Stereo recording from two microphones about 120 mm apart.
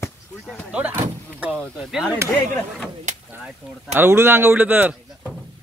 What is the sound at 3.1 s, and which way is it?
Speech, 80° right.